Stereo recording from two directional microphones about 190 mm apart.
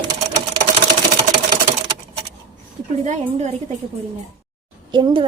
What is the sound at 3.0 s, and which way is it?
Speech, 40° right (ahead or behind).